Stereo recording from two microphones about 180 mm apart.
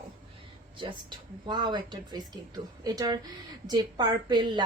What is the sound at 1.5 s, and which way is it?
A woman's voice, 25° right (ahead or behind).